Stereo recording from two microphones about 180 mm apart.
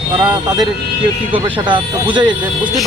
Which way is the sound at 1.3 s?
30° right (ahead or behind).